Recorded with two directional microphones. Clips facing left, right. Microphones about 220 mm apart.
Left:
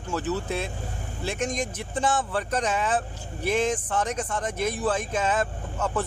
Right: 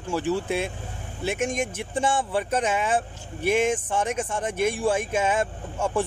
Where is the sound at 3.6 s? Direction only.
25° right (ahead or behind).